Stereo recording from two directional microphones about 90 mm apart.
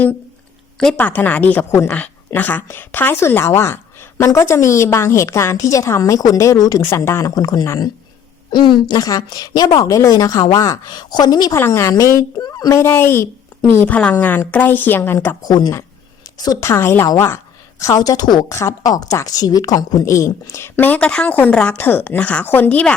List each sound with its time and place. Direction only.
0.9 s a woman's voice: 20° left (ahead or behind); by 7.0 s 40° left (ahead or behind)
7.0 s a woman's voice: 30° left (ahead or behind)
7.3 s a woman's voice: 45° left (ahead or behind)
8.5 s a woman's voice: 60° left (ahead or behind)
9.0 s a woman's voice: 40° left (ahead or behind)
11.5 s a woman's voice: 30° left (ahead or behind)
12.4 s speech: 45° left (ahead or behind)
12.8 s a woman's voice: 25° left (ahead or behind)
15.4 s a woman's voice: 45° left (ahead or behind)
16.6 s a woman's voice: 30° left (ahead or behind)